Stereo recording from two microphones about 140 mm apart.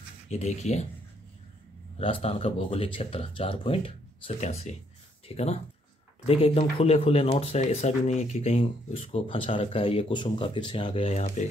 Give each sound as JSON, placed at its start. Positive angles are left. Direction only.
{"t": 0.3, "sound": "speech", "side_deg": 55}
{"t": 2.0, "sound": "speech", "side_deg": 40}
{"t": 4.4, "sound": "speech", "side_deg": 50}